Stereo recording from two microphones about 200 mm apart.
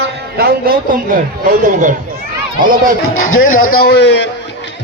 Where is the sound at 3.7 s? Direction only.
55° left (ahead or behind).